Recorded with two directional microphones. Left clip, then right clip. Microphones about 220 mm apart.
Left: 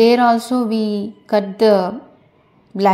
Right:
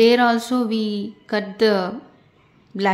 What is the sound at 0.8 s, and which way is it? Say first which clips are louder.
Speech: left 5 dB; 30° left (ahead or behind).